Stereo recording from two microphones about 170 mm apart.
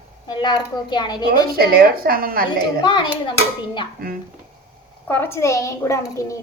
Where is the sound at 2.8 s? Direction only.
30° left (ahead or behind).